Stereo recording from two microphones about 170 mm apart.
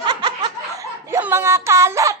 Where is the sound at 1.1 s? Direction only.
15° right (ahead or behind).